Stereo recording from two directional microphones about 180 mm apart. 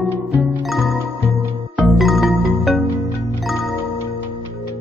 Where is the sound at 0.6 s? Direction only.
Centre (ahead or behind).